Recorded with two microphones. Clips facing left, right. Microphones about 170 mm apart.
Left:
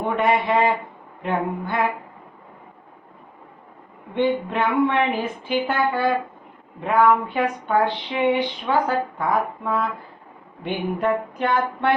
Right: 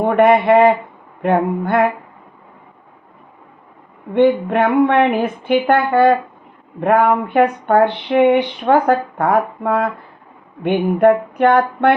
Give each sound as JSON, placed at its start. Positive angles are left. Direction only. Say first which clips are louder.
{"t": 0.0, "sound": "speech", "louder": "right 8 dB", "side_deg": -60}
{"t": 4.1, "sound": "speech", "louder": "right 8 dB", "side_deg": -60}